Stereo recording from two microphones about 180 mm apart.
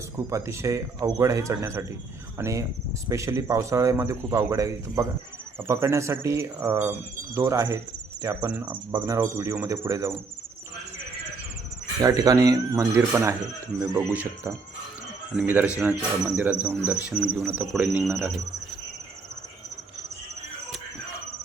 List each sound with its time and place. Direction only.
0.3 s speech: 15° right (ahead or behind)
8.9 s speech: 25° right (ahead or behind)
12.0 s speech: 20° right (ahead or behind)